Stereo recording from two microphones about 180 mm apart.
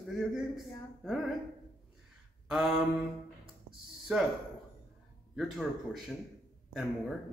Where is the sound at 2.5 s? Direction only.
Centre (ahead or behind).